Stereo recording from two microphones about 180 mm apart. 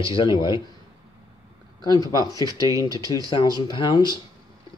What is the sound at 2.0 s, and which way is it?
Speech, 20° left (ahead or behind).